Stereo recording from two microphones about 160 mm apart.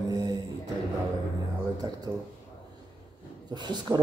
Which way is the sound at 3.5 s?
25° right (ahead or behind).